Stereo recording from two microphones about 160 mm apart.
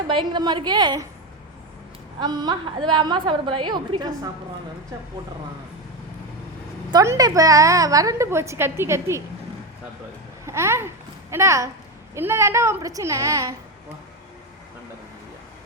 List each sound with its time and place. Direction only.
0.1 s a woman's voice: 30° right (ahead or behind)
2.2 s a woman's voice: 25° right (ahead or behind)
6.9 s a woman's voice: 20° right (ahead or behind)
10.4 s a child's voice: 15° right (ahead or behind)